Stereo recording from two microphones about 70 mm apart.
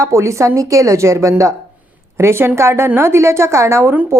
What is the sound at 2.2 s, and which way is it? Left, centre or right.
A woman's voice, right.